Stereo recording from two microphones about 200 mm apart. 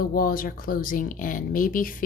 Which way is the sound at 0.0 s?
45° left (ahead or behind).